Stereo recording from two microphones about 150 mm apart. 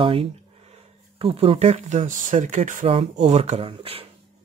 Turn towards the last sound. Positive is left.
turn(degrees=-40)  # may be behind; listen again after turning